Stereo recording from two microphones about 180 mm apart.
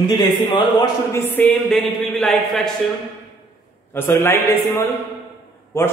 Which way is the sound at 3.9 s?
15° left (ahead or behind).